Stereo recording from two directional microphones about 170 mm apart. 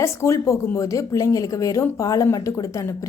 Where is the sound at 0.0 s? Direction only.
15° left (ahead or behind).